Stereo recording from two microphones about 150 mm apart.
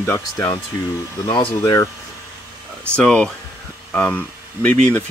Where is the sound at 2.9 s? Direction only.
5° left (ahead or behind).